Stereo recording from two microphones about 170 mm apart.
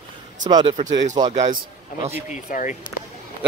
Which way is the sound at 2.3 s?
45° left (ahead or behind).